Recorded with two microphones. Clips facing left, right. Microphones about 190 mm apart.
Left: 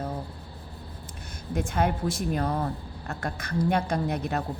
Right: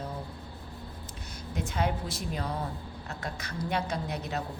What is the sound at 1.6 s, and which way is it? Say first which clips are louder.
A woman's voice: left 4 dB; 50° left (ahead or behind).